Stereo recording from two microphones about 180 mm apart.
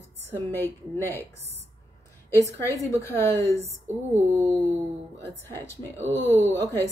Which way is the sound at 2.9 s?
15° left (ahead or behind).